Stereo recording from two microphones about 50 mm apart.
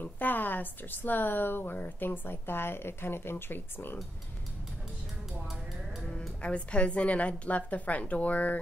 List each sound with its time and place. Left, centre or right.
0.0 s a woman's voice: left
6.4 s a woman's voice: left